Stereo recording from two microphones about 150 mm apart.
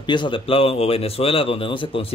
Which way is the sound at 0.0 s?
30° left (ahead or behind).